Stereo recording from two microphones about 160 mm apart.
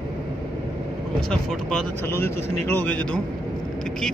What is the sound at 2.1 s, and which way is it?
A man's voice, 15° left (ahead or behind).